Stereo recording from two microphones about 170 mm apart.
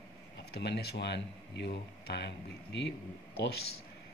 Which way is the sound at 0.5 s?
75° left (ahead or behind).